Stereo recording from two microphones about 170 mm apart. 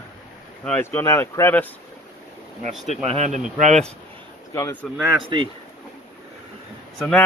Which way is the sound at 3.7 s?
5° left (ahead or behind).